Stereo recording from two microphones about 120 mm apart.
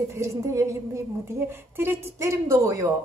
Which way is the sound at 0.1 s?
25° right (ahead or behind).